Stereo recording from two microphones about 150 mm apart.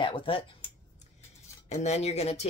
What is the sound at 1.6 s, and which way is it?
Speech, 50° left (ahead or behind).